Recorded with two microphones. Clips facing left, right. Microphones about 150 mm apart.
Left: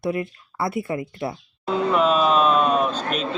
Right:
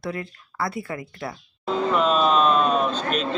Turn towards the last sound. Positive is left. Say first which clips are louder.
# left 1 dB
turn(degrees=10)  # may be behind; listen again after turning